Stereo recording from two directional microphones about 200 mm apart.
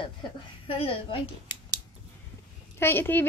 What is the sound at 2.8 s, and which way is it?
Speech, 10° left (ahead or behind).